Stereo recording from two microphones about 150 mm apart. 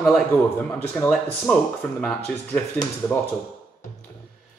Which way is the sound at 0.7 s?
10° left (ahead or behind).